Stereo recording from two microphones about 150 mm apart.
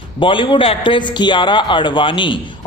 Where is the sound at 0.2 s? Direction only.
35° left (ahead or behind).